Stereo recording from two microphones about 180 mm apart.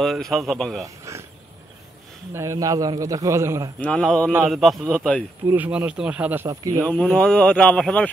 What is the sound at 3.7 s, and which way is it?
Speech, 5° left (ahead or behind).